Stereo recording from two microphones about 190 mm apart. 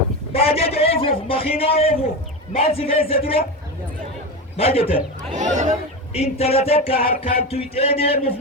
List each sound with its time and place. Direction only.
0.3 s a man's voice: 30° left (ahead or behind)
4.5 s a man's voice: 30° left (ahead or behind)
5.3 s speech: 40° right (ahead or behind)
6.1 s a man's voice: 30° left (ahead or behind)